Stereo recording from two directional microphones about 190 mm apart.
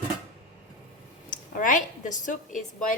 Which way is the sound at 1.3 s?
45° left (ahead or behind).